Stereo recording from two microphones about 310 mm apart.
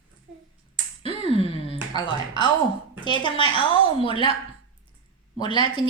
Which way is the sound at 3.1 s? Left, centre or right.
Centre.